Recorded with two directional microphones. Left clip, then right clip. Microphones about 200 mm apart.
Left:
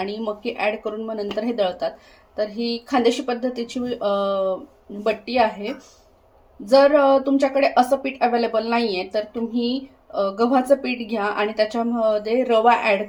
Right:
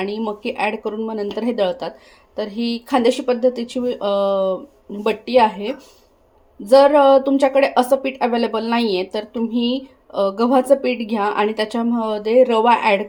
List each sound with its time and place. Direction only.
0.0 s a woman's voice: 30° right (ahead or behind)